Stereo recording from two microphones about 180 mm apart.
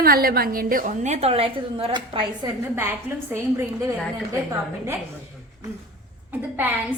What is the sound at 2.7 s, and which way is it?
A woman's voice, 10° right (ahead or behind).